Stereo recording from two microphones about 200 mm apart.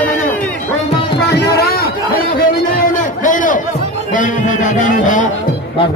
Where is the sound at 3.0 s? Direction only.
40° left (ahead or behind).